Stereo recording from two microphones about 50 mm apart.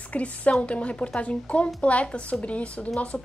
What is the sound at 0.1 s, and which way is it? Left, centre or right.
A woman's voice, left.